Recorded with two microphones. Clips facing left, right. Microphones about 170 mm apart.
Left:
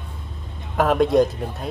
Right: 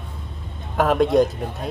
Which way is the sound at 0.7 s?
Centre (ahead or behind).